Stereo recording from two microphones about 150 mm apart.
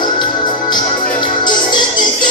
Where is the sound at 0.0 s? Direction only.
30° left (ahead or behind).